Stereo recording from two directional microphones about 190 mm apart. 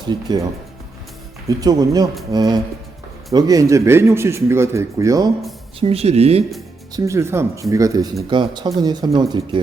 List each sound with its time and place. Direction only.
0.0 s speech: 20° right (ahead or behind)
1.5 s speech: 20° right (ahead or behind)
5.8 s speech: 30° right (ahead or behind)
6.9 s speech: 15° right (ahead or behind)